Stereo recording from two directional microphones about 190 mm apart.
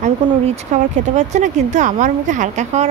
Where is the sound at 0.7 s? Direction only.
40° right (ahead or behind).